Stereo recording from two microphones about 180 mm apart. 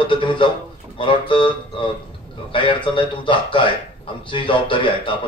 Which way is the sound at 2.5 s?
25° left (ahead or behind).